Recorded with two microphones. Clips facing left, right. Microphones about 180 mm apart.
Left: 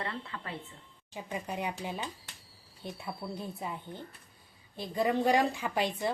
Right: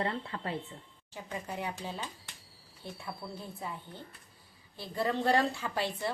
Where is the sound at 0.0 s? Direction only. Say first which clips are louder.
Right 4 dB; 30° right (ahead or behind).